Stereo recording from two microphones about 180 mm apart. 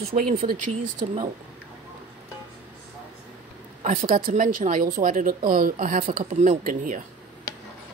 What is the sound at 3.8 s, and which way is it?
Speech, 45° right (ahead or behind).